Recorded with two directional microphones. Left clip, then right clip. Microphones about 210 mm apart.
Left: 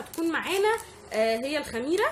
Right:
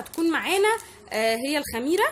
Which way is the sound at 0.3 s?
45° right (ahead or behind).